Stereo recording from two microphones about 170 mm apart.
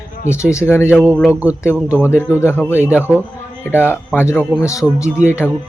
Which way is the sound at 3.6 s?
10° left (ahead or behind).